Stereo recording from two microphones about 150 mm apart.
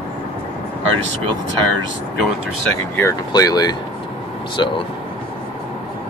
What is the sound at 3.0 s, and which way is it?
Speech, 20° left (ahead or behind).